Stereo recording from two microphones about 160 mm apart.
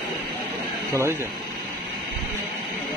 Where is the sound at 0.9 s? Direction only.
15° right (ahead or behind).